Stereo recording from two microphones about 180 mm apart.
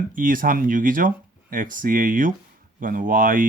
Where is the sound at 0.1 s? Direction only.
50° right (ahead or behind).